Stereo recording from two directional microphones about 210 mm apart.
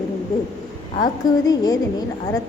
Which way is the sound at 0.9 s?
20° left (ahead or behind).